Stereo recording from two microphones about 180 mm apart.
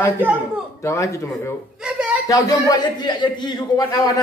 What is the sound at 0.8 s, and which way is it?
A man's voice, 15° left (ahead or behind).